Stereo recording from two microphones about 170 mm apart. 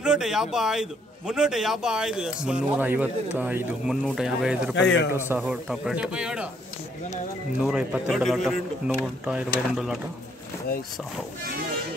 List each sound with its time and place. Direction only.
0.0 s a man's voice: 5° right (ahead or behind)
4.7 s a man's voice: 90° left
5.4 s a man's voice: centre (ahead or behind)
7.6 s a man's voice: 5° right (ahead or behind)